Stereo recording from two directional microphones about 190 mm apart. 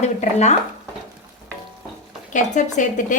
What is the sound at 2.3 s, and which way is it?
Speech, 40° left (ahead or behind).